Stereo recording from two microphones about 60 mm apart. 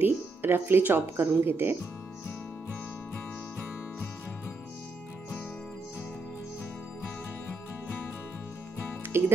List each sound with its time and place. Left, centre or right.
0.0 s speech: right
9.1 s music: right